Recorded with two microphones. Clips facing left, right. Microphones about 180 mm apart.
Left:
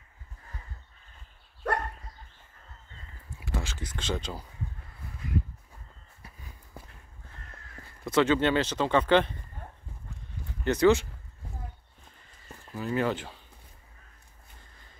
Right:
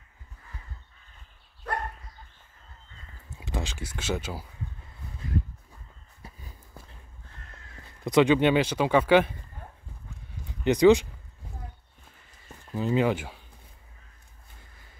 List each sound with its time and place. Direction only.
3.3 s speech: 20° right (ahead or behind)
8.0 s speech: 15° right (ahead or behind)
10.6 s speech: 15° right (ahead or behind)
12.7 s speech: 20° right (ahead or behind)